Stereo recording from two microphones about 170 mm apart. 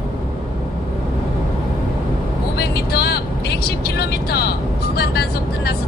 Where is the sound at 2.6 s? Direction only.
70° left (ahead or behind).